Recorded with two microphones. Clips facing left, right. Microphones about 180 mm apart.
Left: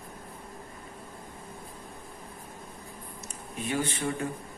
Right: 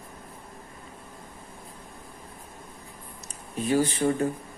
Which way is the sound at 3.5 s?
40° right (ahead or behind).